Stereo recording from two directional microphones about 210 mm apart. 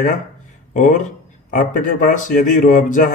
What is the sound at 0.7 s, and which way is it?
Speech, 35° left (ahead or behind).